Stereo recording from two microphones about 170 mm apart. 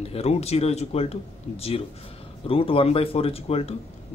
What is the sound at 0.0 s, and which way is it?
A man's voice, 35° left (ahead or behind).